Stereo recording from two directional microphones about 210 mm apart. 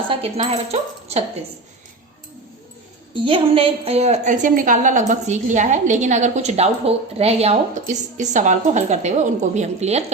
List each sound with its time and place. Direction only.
0.1 s a woman's voice: 30° right (ahead or behind)
3.2 s a woman's voice: 25° right (ahead or behind)